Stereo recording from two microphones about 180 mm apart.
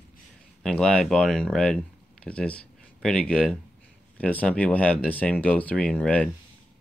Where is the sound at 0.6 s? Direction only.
5° left (ahead or behind).